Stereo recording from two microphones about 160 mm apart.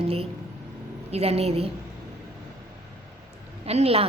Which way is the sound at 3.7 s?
40° right (ahead or behind).